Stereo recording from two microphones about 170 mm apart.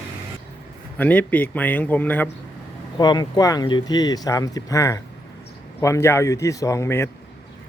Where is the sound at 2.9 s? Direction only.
25° left (ahead or behind).